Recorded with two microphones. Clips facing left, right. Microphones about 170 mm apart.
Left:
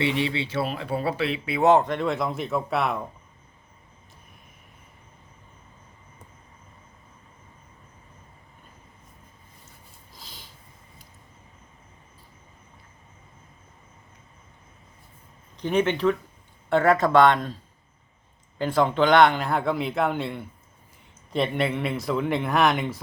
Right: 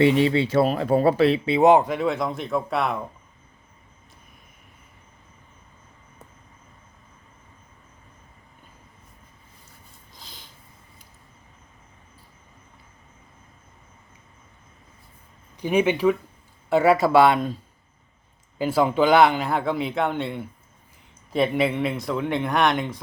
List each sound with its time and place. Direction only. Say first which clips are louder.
0.0 s speech: right 7 dB; 40° right (ahead or behind)
1.5 s speech: right 2 dB; 25° right (ahead or behind)
1.7 s speech: right 2 dB; 10° right (ahead or behind)
10.2 s a sound: even; centre (ahead or behind)
15.5 s speech: right 2 dB; 10° right (ahead or behind)
18.6 s speech: right 2 dB; 5° right (ahead or behind)